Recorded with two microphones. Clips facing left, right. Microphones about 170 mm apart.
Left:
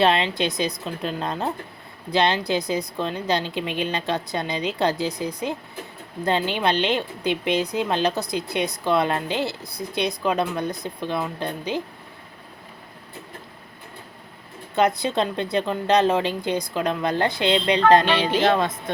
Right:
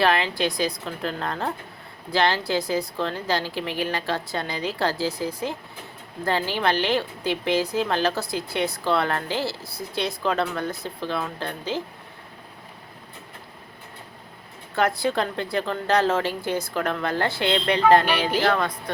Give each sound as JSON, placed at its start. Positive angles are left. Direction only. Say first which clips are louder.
{"t": 0.0, "sound": "a woman's voice", "louder": "left 2 dB", "side_deg": 20}
{"t": 14.8, "sound": "a woman's voice", "louder": "left 2 dB", "side_deg": 20}